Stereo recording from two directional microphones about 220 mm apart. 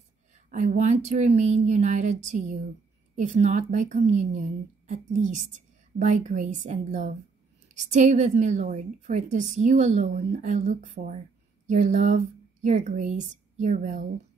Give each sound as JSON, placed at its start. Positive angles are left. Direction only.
{"t": 0.5, "sound": "a woman's voice", "side_deg": -35}